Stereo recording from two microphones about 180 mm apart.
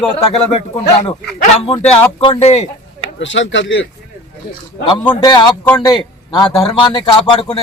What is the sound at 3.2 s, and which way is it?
Speech, 90° left.